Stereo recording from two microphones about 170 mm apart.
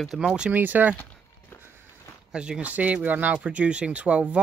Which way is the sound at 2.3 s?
5° right (ahead or behind).